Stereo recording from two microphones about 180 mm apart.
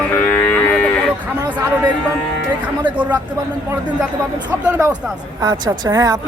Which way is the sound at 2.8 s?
10° right (ahead or behind).